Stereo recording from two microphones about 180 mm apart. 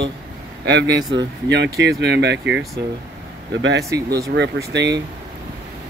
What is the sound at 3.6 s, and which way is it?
Speech, 90° right.